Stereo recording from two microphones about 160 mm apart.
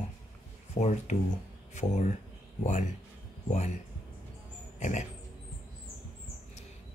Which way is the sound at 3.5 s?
45° left (ahead or behind).